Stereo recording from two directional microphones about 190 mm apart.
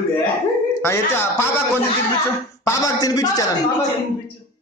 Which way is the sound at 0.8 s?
15° left (ahead or behind).